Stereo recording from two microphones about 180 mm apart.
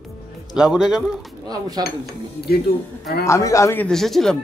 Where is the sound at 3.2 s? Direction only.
15° left (ahead or behind).